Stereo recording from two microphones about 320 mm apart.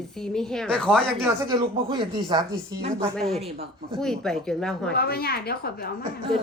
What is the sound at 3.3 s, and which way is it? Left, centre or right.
Speech, centre.